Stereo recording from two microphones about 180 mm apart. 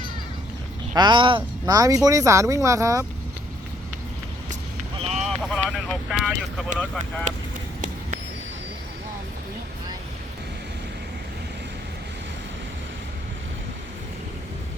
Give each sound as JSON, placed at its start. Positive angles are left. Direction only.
{"t": 0.9, "sound": "speech", "side_deg": -25}
{"t": 4.9, "sound": "boat", "side_deg": -35}
{"t": 5.2, "sound": "speech", "side_deg": 0}